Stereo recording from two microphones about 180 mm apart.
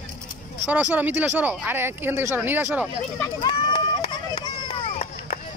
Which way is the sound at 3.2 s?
25° left (ahead or behind).